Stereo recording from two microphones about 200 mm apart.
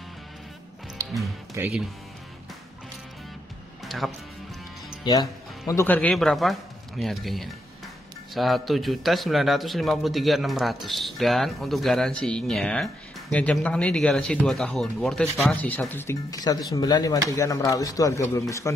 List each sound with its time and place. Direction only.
1.0 s music: 15° right (ahead or behind)
1.6 s speech: 10° right (ahead or behind)
3.8 s music: centre (ahead or behind)
5.1 s speech: 25° left (ahead or behind)
5.7 s speech: 10° left (ahead or behind)